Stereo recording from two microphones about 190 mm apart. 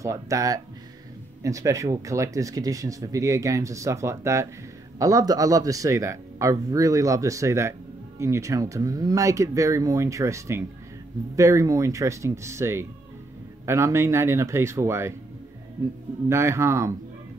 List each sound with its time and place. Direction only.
0.0 s speech: 15° right (ahead or behind)
16.3 s speech: 15° right (ahead or behind)